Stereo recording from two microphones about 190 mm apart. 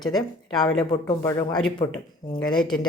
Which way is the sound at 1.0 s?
20° left (ahead or behind).